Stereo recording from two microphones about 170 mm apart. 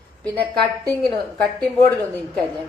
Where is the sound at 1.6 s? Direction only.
5° left (ahead or behind).